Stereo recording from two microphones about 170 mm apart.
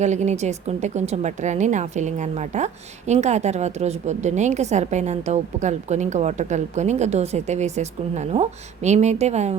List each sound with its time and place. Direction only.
0.0 s a woman's voice: 45° right (ahead or behind)